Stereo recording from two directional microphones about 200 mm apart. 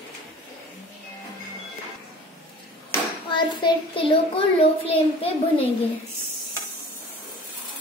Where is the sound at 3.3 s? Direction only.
25° left (ahead or behind).